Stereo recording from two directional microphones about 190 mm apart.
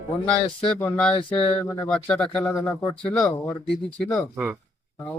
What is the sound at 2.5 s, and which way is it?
Speech, 15° left (ahead or behind).